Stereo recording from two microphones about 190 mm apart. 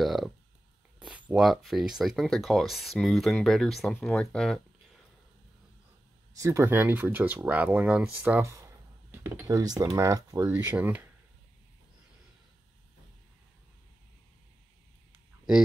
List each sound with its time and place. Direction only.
0.0 s a sound: centre (ahead or behind)
0.9 s speech: 5° right (ahead or behind)
6.3 s speech: 15° right (ahead or behind)